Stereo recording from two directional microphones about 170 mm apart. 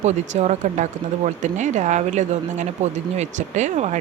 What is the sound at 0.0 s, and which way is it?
Speech, 40° right (ahead or behind).